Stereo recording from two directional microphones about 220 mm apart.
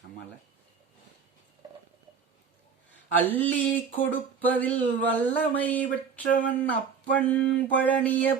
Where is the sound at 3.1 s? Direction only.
10° left (ahead or behind).